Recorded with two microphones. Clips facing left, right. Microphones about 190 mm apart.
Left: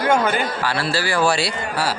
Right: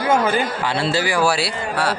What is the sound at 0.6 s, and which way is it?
Speech, 25° right (ahead or behind).